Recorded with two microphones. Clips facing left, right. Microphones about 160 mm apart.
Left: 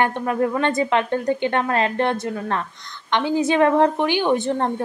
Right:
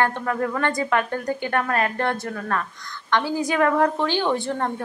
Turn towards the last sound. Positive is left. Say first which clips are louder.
# left 4 dB
turn(degrees=25)  # may be behind; listen again after turning